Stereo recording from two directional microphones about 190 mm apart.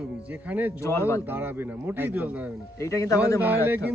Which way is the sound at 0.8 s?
15° left (ahead or behind).